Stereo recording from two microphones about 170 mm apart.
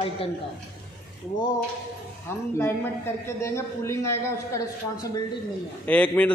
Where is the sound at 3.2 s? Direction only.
15° left (ahead or behind).